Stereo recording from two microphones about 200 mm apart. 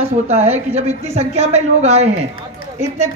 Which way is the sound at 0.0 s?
30° right (ahead or behind).